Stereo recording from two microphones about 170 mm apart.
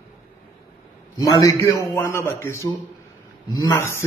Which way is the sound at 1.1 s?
20° left (ahead or behind).